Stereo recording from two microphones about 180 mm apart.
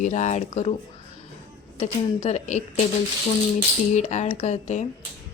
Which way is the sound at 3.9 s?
40° left (ahead or behind).